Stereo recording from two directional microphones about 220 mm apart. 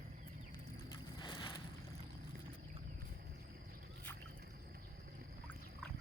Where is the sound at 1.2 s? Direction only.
20° left (ahead or behind).